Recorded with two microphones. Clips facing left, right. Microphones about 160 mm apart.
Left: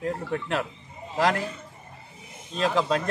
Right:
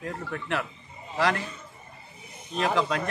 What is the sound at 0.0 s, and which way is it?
Speech, 30° left (ahead or behind).